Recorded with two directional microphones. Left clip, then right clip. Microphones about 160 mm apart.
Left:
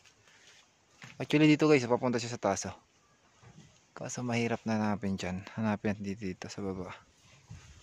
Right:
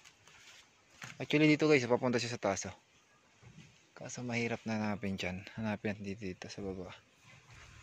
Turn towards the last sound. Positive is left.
turn(degrees=35)  # may be behind; listen again after turning